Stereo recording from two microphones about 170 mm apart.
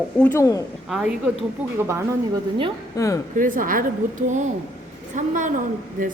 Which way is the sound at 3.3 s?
50° right (ahead or behind).